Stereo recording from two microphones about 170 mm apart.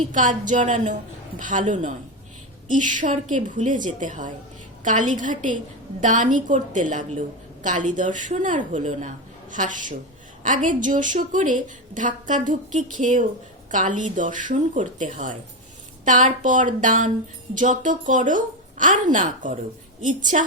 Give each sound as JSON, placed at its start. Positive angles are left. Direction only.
{"t": 0.1, "sound": "a woman's voice", "side_deg": -50}